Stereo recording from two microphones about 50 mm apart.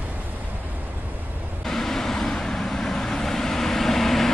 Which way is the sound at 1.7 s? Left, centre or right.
Centre.